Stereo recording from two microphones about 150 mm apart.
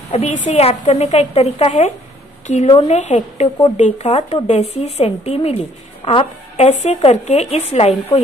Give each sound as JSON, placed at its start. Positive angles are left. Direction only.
{"t": 0.1, "sound": "a woman's voice", "side_deg": 50}